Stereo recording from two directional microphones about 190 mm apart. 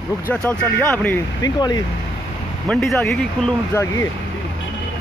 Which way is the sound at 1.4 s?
20° left (ahead or behind).